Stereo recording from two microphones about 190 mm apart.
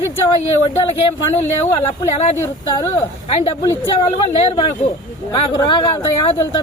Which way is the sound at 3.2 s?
25° left (ahead or behind).